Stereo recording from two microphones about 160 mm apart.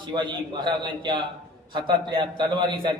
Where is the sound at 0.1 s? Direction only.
30° right (ahead or behind).